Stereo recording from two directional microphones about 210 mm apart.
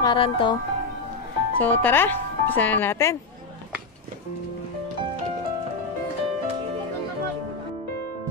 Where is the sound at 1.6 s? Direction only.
10° left (ahead or behind).